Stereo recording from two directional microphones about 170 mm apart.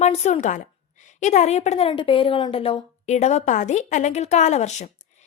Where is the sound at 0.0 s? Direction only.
40° left (ahead or behind).